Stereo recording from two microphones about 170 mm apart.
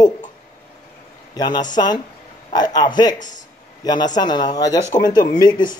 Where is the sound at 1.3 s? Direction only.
25° left (ahead or behind).